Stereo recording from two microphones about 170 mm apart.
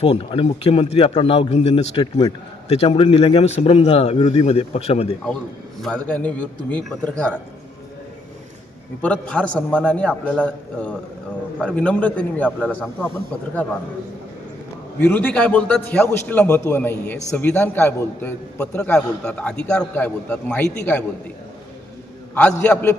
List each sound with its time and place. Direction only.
0.0 s a man's voice: 35° left (ahead or behind)
5.8 s a man's voice: 5° left (ahead or behind)
9.0 s a man's voice: 5° left (ahead or behind)
14.9 s a man's voice: 10° left (ahead or behind)
22.7 s a man's voice: 5° left (ahead or behind)